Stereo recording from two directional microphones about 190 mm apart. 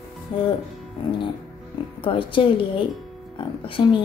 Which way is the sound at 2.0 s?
25° left (ahead or behind).